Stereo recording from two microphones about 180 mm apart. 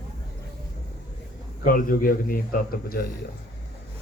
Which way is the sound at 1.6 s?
50° left (ahead or behind).